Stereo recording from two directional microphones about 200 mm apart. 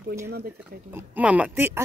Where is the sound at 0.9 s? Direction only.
10° right (ahead or behind).